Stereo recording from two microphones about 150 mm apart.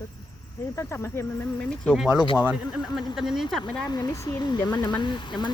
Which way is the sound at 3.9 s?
25° left (ahead or behind).